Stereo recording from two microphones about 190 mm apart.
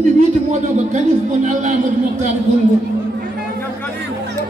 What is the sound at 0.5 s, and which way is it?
Speech, 40° right (ahead or behind).